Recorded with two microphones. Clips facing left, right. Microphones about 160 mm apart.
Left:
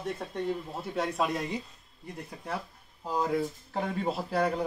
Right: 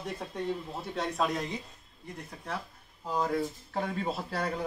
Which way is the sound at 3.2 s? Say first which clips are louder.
Left 1 dB; 5° left (ahead or behind).